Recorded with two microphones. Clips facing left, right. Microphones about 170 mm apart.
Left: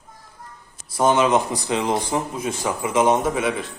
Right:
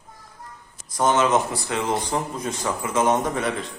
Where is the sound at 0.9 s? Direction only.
10° left (ahead or behind).